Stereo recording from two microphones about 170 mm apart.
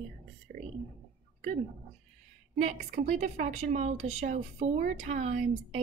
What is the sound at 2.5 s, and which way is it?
A woman's voice, 45° right (ahead or behind).